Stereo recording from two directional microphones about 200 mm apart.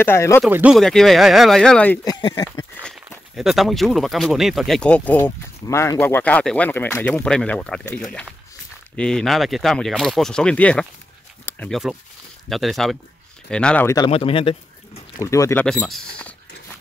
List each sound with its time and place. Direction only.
0.0 s speech: 10° left (ahead or behind)
0.5 s speech: 10° right (ahead or behind)
0.7 s speech: centre (ahead or behind)
2.0 s speech: 20° left (ahead or behind)
2.8 s speech: centre (ahead or behind)
13.9 s speech: 25° left (ahead or behind)
15.2 s speech: 15° left (ahead or behind)
15.6 s speech: 5° left (ahead or behind)